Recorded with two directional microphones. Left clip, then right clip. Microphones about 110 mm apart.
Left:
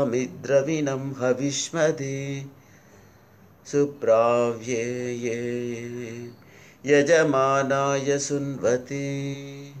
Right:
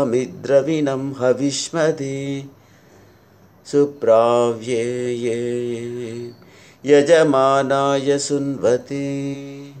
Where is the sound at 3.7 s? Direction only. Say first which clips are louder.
Right 6 dB; 25° right (ahead or behind).